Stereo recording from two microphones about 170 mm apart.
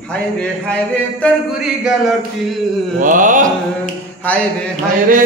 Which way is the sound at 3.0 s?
50° right (ahead or behind).